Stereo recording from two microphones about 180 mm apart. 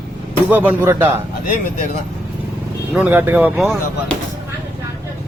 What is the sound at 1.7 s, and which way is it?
Speech, 45° left (ahead or behind).